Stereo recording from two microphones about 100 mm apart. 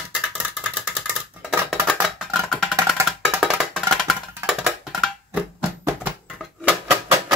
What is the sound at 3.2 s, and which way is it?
Music, 5° right (ahead or behind).